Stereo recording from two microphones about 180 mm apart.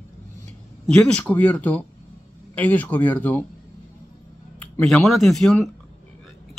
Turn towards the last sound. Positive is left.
turn(degrees=0)  # may be behind; listen again after turning